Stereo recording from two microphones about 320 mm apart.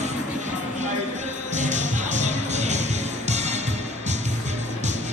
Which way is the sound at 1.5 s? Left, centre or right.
Right.